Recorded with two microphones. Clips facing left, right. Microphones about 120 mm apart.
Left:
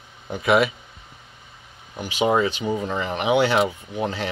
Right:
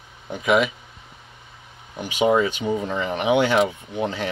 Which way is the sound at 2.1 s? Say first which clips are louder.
Right 1 dB; 30° left (ahead or behind).